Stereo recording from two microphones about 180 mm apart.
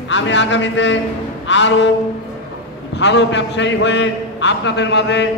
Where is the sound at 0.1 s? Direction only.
85° left.